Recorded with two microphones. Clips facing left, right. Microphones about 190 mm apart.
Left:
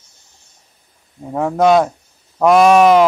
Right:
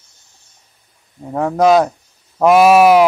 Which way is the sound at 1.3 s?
Centre (ahead or behind).